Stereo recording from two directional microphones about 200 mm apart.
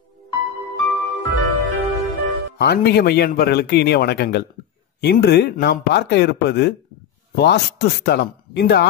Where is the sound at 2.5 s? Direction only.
55° left (ahead or behind).